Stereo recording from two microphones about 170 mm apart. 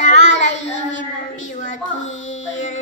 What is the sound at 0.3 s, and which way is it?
Child singing, 90° left.